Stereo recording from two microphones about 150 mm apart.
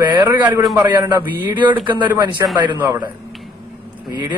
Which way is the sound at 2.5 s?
30° right (ahead or behind).